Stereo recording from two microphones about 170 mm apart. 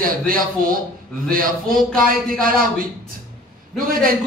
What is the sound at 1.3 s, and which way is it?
Speech, 55° right (ahead or behind).